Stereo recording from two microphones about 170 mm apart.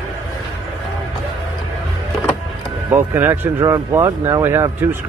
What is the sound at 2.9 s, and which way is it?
Speech, 15° right (ahead or behind).